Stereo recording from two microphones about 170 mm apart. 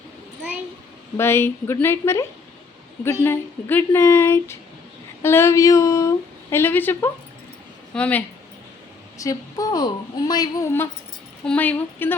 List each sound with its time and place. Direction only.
1.1 s a woman's voice: 15° left (ahead or behind)
3.2 s a woman's voice: 15° left (ahead or behind)
9.1 s a woman's voice: 20° left (ahead or behind)
11.4 s a woman's voice: 10° left (ahead or behind)